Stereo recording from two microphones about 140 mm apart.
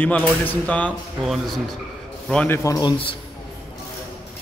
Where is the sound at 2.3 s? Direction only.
10° left (ahead or behind).